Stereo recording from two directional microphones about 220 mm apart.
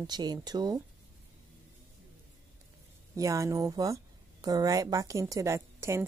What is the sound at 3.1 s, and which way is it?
Speech, 15° right (ahead or behind).